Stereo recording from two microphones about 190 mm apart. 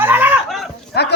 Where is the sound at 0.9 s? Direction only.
60° left (ahead or behind).